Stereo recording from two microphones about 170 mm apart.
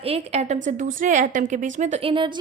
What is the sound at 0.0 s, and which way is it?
A woman's voice, 35° right (ahead or behind).